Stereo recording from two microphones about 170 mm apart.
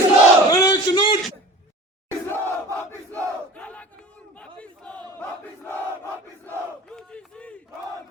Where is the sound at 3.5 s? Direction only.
10° left (ahead or behind).